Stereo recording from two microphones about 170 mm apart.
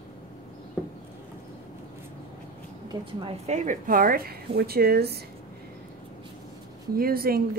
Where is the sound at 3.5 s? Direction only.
50° right (ahead or behind); by 5.2 s 70° right (ahead or behind).